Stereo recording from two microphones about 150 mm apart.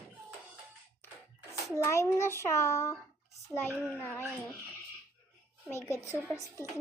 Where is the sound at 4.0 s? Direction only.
15° left (ahead or behind).